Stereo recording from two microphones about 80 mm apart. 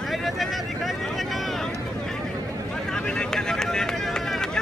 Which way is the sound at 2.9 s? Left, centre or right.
Centre.